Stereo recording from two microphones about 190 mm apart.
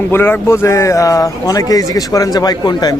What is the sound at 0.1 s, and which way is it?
A man's voice, 10° left (ahead or behind).